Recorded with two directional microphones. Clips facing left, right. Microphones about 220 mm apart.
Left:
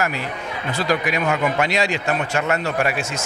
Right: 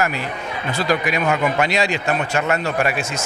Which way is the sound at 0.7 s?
15° right (ahead or behind).